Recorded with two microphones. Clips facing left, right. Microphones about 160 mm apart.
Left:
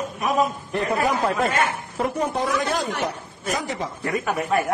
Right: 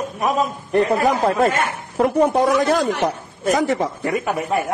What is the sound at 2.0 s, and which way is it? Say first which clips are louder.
Speech: right 8 dB; 55° right (ahead or behind).